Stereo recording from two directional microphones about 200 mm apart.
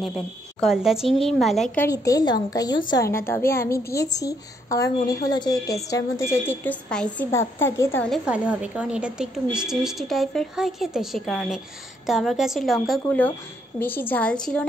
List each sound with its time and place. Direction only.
0.0 s a woman's voice: centre (ahead or behind)
1.9 s a woman's voice: 15° left (ahead or behind)
8.1 s a woman's voice: 5° right (ahead or behind)